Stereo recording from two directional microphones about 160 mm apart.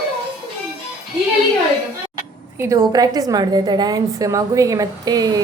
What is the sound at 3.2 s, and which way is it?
A woman's voice, 25° right (ahead or behind).